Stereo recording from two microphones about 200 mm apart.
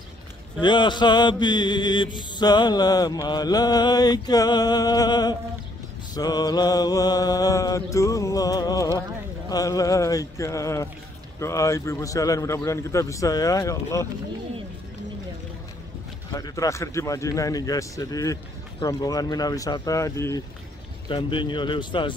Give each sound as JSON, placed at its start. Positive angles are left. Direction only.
{"t": 0.6, "sound": "mantra", "side_deg": 25}
{"t": 6.1, "sound": "speech", "side_deg": 20}
{"t": 16.3, "sound": "speech", "side_deg": 20}
{"t": 21.1, "sound": "mantra", "side_deg": 25}